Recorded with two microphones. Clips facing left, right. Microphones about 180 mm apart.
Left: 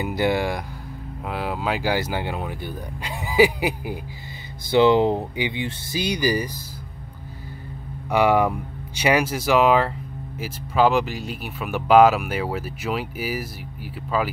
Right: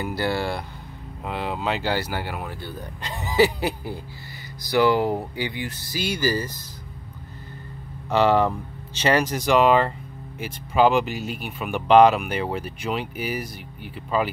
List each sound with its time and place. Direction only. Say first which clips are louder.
0.0 s speech: left 3 dB; 15° left (ahead or behind)
4.6 s speech: left 3 dB; 25° left (ahead or behind)
8.1 s speech: even; 10° left (ahead or behind)